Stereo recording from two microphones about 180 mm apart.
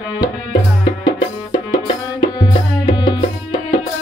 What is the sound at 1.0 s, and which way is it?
Music, 20° left (ahead or behind).